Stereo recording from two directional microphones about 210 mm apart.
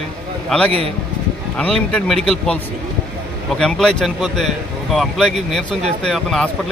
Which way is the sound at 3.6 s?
5° left (ahead or behind).